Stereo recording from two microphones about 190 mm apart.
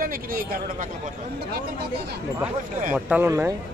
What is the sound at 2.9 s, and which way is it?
Speech, 10° right (ahead or behind).